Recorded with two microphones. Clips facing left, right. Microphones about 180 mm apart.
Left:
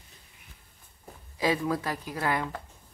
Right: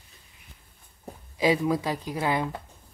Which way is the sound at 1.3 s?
15° right (ahead or behind).